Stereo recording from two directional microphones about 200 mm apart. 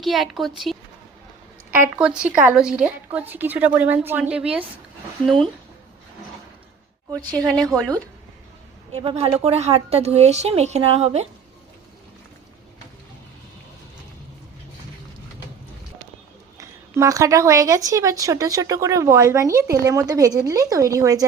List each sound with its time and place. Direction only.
0.0 s a woman's voice: centre (ahead or behind)
7.1 s a woman's voice: 20° right (ahead or behind)
7.3 s a woman's voice: 5° left (ahead or behind)
9.0 s a woman's voice: 30° right (ahead or behind)
16.6 s speech: 15° right (ahead or behind)